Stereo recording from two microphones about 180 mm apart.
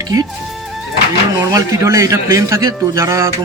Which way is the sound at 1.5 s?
15° right (ahead or behind).